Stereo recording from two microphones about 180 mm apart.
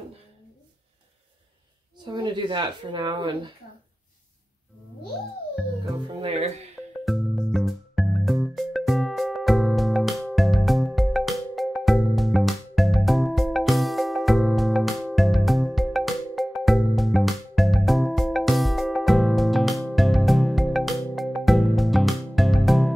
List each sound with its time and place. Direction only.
2.0 s a woman's voice: 25° right (ahead or behind)
6.0 s speech: 35° right (ahead or behind)
7.1 s music: centre (ahead or behind)